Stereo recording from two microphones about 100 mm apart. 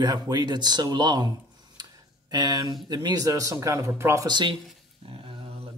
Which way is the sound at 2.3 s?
40° right (ahead or behind).